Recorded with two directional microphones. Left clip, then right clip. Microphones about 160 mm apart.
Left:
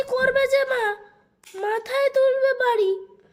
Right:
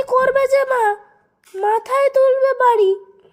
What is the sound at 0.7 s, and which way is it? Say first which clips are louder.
Child singing: right 7 dB; 20° right (ahead or behind).